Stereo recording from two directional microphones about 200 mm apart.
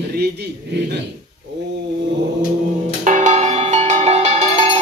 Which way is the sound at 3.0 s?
40° right (ahead or behind).